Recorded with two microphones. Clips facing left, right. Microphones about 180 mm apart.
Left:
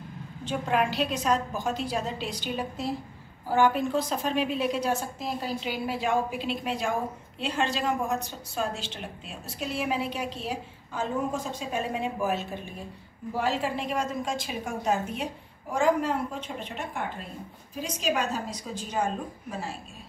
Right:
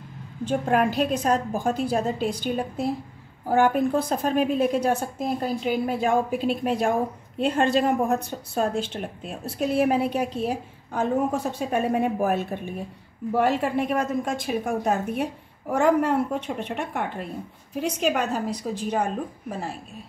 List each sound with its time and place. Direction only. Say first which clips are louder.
0.5 s a woman's voice: right 4 dB; 50° right (ahead or behind)